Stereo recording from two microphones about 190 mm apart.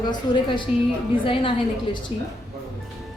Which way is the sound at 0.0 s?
20° left (ahead or behind).